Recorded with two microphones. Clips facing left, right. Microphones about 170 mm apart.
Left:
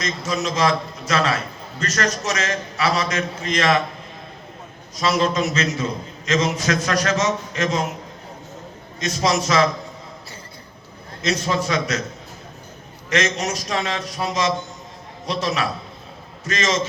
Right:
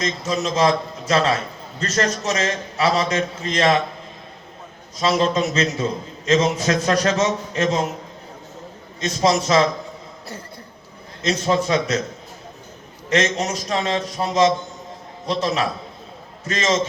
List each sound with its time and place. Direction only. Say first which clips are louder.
0.0 s a man's voice: right 1 dB; 30° right (ahead or behind)
4.9 s a man's voice: right 1 dB; 30° right (ahead or behind)
9.0 s a man's voice: right 2 dB; 30° right (ahead or behind)
11.3 s a man's voice: right 3 dB; 30° right (ahead or behind)
13.1 s a man's voice: right 2 dB; 30° right (ahead or behind)
16.5 s a man's voice: right 1 dB; 30° right (ahead or behind)